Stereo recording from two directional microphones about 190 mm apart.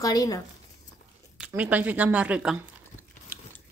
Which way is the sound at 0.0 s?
20° left (ahead or behind).